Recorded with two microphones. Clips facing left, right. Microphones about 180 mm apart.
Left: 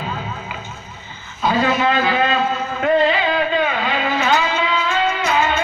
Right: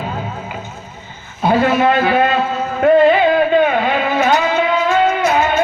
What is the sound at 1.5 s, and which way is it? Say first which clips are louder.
Speech: right 4 dB; 55° right (ahead or behind).